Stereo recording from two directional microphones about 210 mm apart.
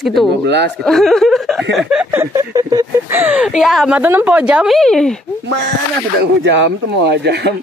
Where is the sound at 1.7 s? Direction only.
5° right (ahead or behind).